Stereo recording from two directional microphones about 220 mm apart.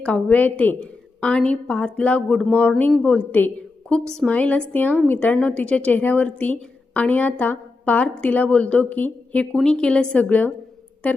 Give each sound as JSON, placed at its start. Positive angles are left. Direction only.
{"t": 0.0, "sound": "speech", "side_deg": 5}